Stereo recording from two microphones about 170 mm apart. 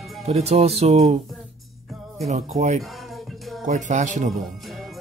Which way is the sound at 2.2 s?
40° right (ahead or behind).